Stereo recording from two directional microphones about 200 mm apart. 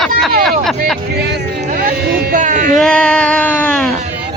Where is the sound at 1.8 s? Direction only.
45° right (ahead or behind).